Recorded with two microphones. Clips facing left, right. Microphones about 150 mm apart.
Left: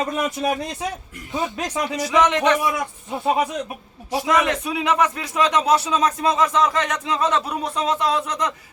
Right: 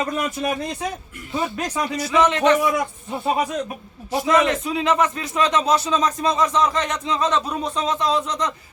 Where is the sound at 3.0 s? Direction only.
Centre (ahead or behind).